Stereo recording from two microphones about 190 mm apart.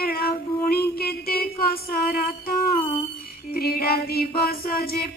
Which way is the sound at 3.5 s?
55° left (ahead or behind).